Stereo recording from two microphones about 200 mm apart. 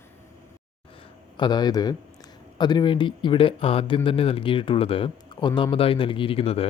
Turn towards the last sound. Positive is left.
turn(degrees=30)  # may be behind; listen again after turning